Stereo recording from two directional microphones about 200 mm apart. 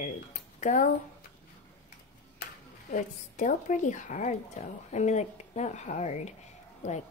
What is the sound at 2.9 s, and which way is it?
Speech, 40° left (ahead or behind).